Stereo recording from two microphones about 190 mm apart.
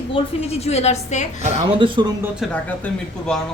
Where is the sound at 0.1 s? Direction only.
35° left (ahead or behind).